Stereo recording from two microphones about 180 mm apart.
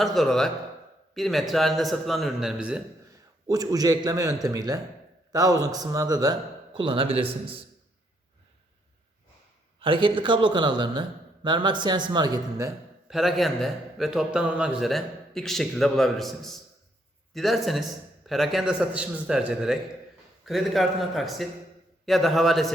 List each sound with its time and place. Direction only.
0.0 s a man's voice: centre (ahead or behind)
3.4 s a man's voice: 20° right (ahead or behind)
9.8 s a man's voice: 30° right (ahead or behind)
13.1 s a man's voice: centre (ahead or behind)